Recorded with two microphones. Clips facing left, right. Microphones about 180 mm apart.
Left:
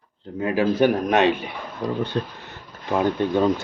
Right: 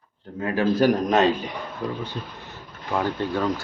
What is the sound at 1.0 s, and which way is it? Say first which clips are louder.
A man's voice: left 1 dB; 65° left (ahead or behind).